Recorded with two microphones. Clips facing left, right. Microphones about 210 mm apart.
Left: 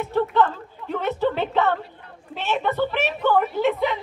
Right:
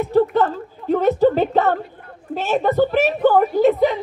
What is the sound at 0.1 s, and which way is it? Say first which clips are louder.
A woman's voice: right 4 dB; 40° right (ahead or behind).